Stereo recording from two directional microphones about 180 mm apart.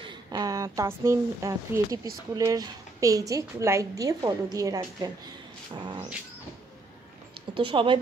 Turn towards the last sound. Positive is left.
turn(degrees=-30)  # may be behind; listen again after turning